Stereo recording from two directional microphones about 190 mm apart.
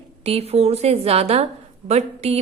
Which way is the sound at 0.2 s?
30° right (ahead or behind).